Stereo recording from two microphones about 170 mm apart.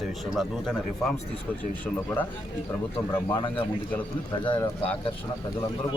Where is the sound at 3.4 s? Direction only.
30° left (ahead or behind).